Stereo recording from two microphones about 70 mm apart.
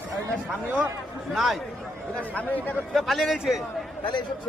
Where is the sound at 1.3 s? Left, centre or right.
Centre.